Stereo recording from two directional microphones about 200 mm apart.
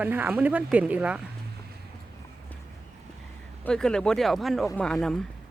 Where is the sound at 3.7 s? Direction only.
5° left (ahead or behind).